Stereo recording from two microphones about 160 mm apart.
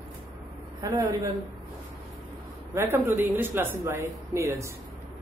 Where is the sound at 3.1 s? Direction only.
15° right (ahead or behind).